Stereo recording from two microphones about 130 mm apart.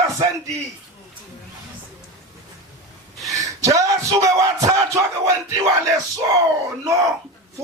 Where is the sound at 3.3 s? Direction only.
25° right (ahead or behind).